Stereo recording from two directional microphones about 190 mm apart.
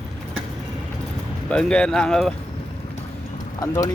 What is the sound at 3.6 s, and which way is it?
Speech, 20° left (ahead or behind).